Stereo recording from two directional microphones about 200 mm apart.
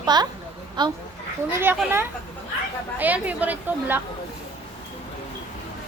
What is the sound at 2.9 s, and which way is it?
A woman's voice, 10° right (ahead or behind).